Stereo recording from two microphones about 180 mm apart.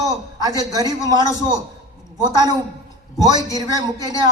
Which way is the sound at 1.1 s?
15° left (ahead or behind).